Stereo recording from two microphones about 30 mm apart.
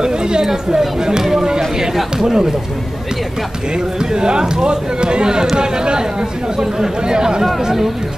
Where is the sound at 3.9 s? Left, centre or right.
Right.